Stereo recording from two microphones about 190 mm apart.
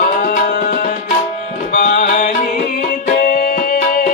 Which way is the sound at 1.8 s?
45° left (ahead or behind).